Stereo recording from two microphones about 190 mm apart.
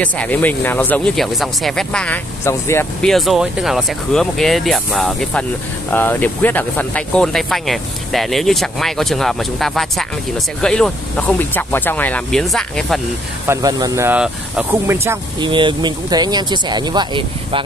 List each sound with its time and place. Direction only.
0.0 s speech: 5° left (ahead or behind)
13.5 s speech: 20° right (ahead or behind)
15.4 s speech: 25° right (ahead or behind)